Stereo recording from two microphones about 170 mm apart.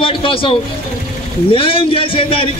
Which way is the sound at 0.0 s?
30° left (ahead or behind).